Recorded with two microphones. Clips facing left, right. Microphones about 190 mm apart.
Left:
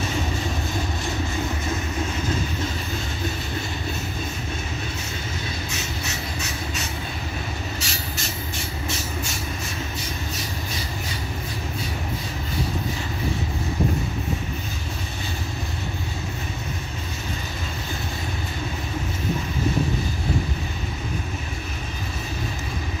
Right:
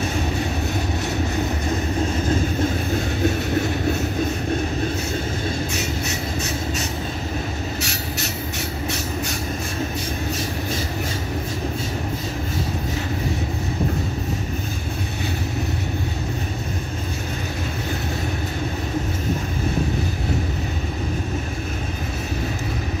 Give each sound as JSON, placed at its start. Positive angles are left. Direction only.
{"t": 7.8, "sound": "train", "side_deg": -65}